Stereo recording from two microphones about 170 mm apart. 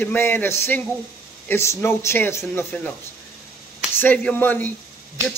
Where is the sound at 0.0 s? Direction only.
10° left (ahead or behind).